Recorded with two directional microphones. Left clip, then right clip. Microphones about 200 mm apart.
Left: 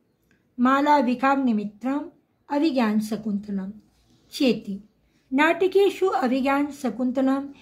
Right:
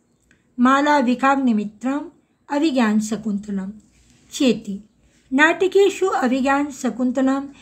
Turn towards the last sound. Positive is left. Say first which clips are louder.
# right 3 dB
turn(degrees=-10)  # may be behind; listen again after turning